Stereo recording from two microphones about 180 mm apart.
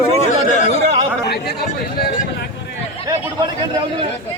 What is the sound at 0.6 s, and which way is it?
Speech, 35° right (ahead or behind).